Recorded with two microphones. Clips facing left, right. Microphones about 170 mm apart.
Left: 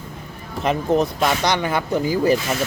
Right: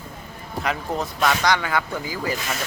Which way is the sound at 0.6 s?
20° left (ahead or behind).